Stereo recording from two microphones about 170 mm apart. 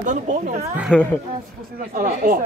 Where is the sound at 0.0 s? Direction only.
45° right (ahead or behind).